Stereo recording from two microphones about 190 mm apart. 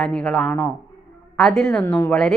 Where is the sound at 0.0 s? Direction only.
5° left (ahead or behind).